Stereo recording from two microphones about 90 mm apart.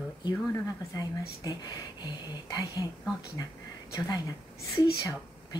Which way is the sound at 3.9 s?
45° left (ahead or behind).